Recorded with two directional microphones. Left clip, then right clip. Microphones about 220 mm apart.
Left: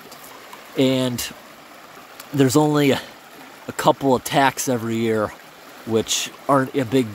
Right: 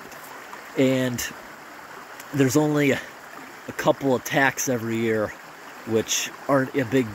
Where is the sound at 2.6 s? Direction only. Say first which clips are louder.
Left 4 dB; 20° left (ahead or behind).